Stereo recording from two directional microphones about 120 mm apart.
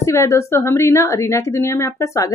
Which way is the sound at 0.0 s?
25° left (ahead or behind).